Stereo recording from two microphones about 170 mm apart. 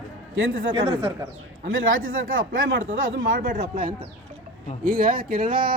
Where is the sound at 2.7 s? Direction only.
90° right.